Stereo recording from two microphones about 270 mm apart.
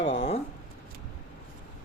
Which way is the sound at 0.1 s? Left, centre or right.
Left.